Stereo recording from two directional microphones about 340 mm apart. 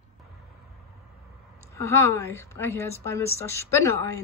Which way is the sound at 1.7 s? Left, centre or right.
Centre.